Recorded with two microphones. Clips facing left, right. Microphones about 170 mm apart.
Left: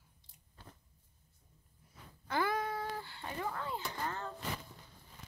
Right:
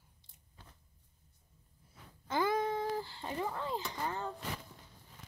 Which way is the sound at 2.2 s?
20° right (ahead or behind).